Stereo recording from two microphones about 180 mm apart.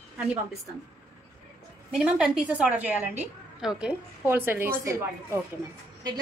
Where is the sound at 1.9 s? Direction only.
5° right (ahead or behind).